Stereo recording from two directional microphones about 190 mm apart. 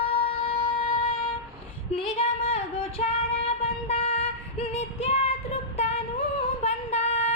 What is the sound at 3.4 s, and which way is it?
Female singing, 30° left (ahead or behind).